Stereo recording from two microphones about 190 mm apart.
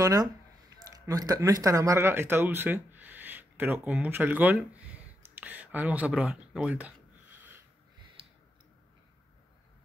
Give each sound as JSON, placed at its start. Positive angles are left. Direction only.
{"t": 0.0, "sound": "speech", "side_deg": -20}